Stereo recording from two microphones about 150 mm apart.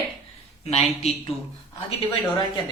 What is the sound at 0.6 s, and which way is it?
Speech, 45° left (ahead or behind).